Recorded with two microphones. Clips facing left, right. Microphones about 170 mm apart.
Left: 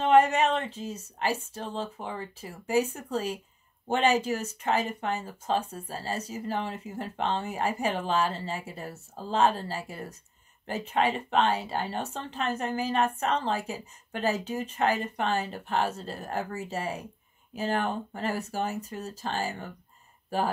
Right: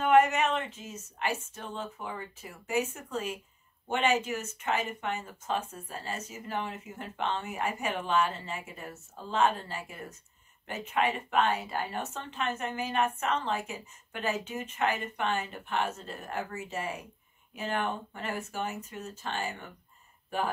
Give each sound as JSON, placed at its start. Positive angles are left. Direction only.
{"t": 0.0, "sound": "speech", "side_deg": 30}